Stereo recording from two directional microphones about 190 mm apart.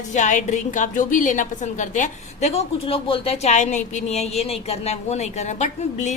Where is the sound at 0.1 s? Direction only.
40° left (ahead or behind).